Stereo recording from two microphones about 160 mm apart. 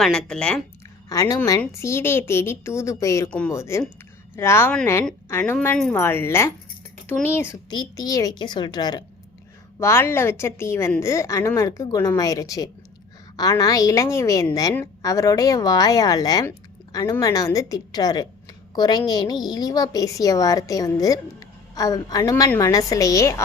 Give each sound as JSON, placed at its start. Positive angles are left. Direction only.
{"t": 0.0, "sound": "speech", "side_deg": 5}
{"t": 1.1, "sound": "a woman's voice", "side_deg": 20}
{"t": 3.2, "sound": "a woman's voice", "side_deg": 5}
{"t": 3.5, "sound": "a woman's voice", "side_deg": 20}
{"t": 5.7, "sound": "a woman's voice", "side_deg": 5}
{"t": 7.7, "sound": "a woman's voice", "side_deg": 25}